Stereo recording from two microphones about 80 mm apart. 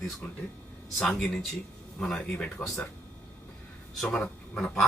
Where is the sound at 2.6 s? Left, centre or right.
Left.